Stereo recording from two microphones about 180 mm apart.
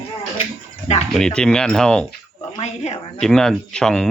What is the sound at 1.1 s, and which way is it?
Speech, 5° left (ahead or behind).